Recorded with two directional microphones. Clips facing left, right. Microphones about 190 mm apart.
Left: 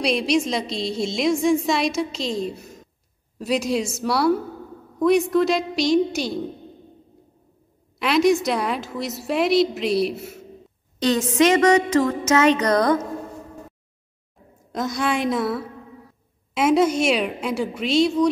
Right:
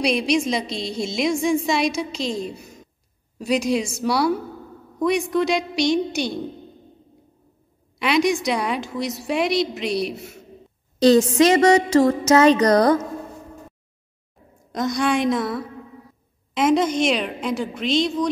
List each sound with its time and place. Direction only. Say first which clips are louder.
0.0 s a woman's voice: even; centre (ahead or behind)
8.0 s a woman's voice: left 2 dB; centre (ahead or behind)
11.0 s music: right 4 dB; 35° right (ahead or behind)
14.7 s a woman's voice: right 2 dB; 5° left (ahead or behind)